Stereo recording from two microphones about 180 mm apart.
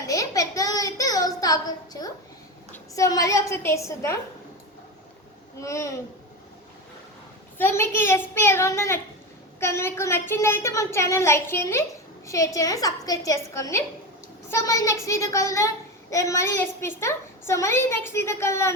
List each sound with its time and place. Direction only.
0.1 s a sound: 20° left (ahead or behind)
2.9 s a child's voice: 20° left (ahead or behind)
5.5 s a child's voice: 15° left (ahead or behind)
7.6 s a child's voice: 15° left (ahead or behind)